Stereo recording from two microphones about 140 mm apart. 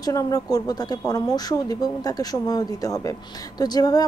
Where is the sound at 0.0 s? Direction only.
25° left (ahead or behind).